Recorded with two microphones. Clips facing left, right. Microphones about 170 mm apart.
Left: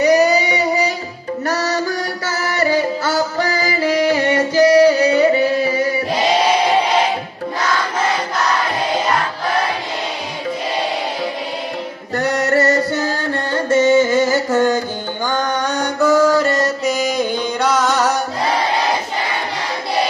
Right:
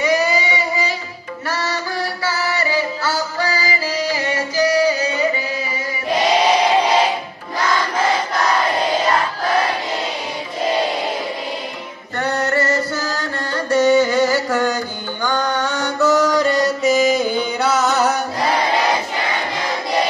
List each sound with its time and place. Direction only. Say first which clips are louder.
0.0 s child singing: left 5 dB; 40° left (ahead or behind)
1.5 s music: left 3 dB; 40° left (ahead or behind); by 5.9 s 65° left (ahead or behind)
12.3 s music: left 3 dB; 70° left (ahead or behind)
13.5 s music: left 1 dB; 25° left (ahead or behind); by 18.1 s 5° right (ahead or behind)